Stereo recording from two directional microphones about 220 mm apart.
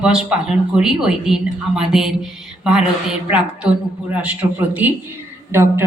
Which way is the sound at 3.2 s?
5° right (ahead or behind).